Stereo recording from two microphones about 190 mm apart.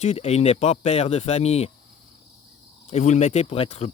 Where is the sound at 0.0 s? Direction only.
35° left (ahead or behind).